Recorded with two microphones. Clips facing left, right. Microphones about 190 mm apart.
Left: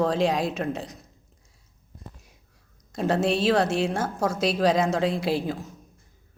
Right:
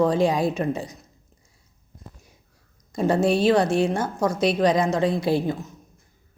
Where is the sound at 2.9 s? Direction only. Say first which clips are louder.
Right 3 dB; centre (ahead or behind).